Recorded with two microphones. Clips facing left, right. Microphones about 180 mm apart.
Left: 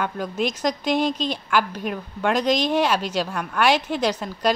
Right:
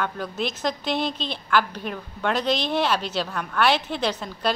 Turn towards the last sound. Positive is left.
turn(degrees=10)  # may be behind; listen again after turning